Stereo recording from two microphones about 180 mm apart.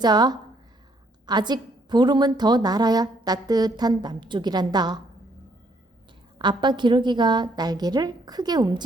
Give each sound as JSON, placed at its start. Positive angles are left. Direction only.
{"t": 0.0, "sound": "a woman's voice", "side_deg": -20}
{"t": 6.4, "sound": "a woman's voice", "side_deg": -25}